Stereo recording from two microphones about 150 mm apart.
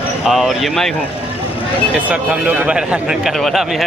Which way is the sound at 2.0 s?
10° right (ahead or behind).